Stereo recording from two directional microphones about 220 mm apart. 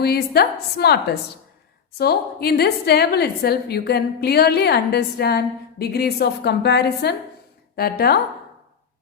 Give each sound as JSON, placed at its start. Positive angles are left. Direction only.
{"t": 0.0, "sound": "a woman's voice", "side_deg": 45}